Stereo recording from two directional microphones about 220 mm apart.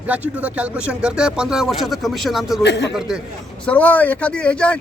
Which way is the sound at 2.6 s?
50° left (ahead or behind).